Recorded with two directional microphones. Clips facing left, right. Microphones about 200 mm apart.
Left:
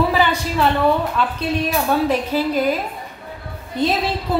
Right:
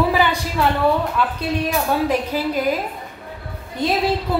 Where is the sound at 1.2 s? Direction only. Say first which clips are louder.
Left 1 dB; 10° right (ahead or behind).